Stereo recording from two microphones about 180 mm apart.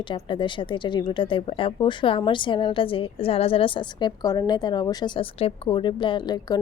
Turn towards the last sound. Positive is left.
turn(degrees=25)  # may be behind; listen again after turning